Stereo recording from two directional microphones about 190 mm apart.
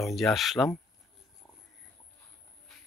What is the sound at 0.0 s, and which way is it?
Speech, centre (ahead or behind).